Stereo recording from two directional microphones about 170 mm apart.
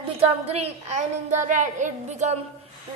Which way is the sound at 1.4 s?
45° right (ahead or behind).